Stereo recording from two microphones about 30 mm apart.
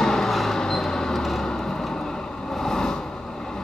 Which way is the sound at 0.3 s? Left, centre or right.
Centre.